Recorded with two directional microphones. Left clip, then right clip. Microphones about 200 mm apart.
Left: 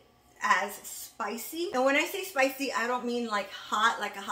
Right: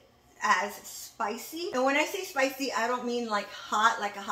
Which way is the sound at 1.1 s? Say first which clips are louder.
Right 1 dB; 15° left (ahead or behind).